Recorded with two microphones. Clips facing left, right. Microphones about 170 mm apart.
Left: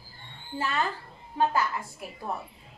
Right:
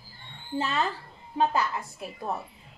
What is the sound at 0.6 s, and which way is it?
A woman's voice, 20° right (ahead or behind).